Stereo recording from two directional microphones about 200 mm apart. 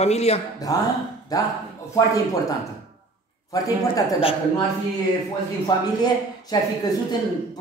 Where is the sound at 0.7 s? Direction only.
15° left (ahead or behind).